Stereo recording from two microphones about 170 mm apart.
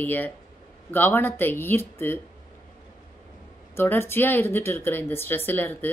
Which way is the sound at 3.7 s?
15° left (ahead or behind).